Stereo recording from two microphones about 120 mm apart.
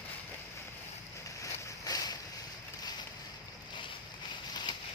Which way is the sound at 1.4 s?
30° left (ahead or behind).